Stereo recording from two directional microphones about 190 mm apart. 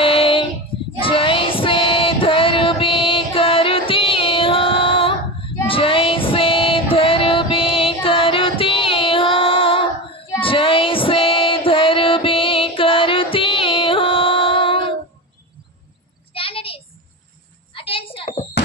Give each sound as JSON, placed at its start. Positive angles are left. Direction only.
{"t": 0.0, "sound": "child singing", "side_deg": 30}
{"t": 5.7, "sound": "female singing", "side_deg": 30}
{"t": 16.3, "sound": "a sound", "side_deg": 30}